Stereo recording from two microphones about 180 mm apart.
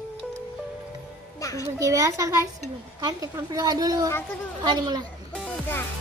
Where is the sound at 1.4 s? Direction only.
20° left (ahead or behind).